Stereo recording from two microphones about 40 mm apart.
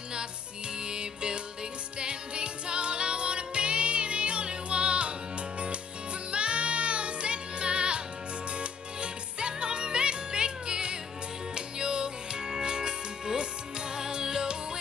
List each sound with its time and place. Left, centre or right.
0.8 s music: right
6.3 s music: right